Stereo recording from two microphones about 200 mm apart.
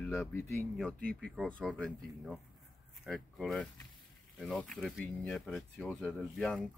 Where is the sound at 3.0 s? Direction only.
Centre (ahead or behind).